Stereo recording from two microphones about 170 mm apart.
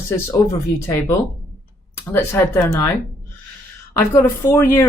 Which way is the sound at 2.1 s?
15° left (ahead or behind).